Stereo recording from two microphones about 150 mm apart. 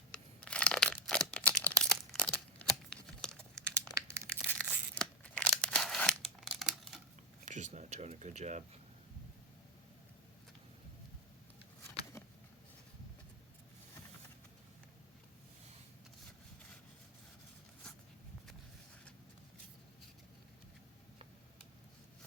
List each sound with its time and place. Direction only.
0.1 s crumpling: 5° left (ahead or behind)
4.1 s tearing: 15° right (ahead or behind)
4.5 s tearing: 5° left (ahead or behind)
7.4 s speech: 50° right (ahead or behind)